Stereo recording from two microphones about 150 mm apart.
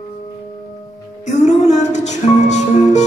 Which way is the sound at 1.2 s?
50° left (ahead or behind).